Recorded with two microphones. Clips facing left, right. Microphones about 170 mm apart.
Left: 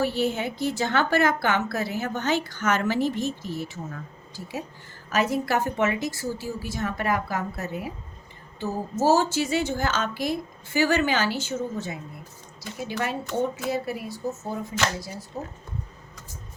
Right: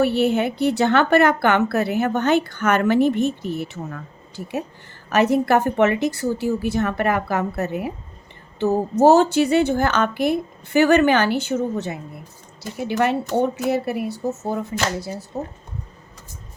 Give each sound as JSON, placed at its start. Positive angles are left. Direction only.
{"t": 0.0, "sound": "a woman's voice", "side_deg": -65}
{"t": 5.0, "sound": "a woman's voice", "side_deg": -65}